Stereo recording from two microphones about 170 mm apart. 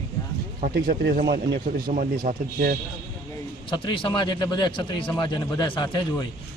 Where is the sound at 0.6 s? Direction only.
55° right (ahead or behind).